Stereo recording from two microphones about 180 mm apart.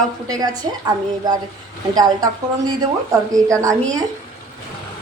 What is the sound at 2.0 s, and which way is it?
A woman's voice, 20° right (ahead or behind).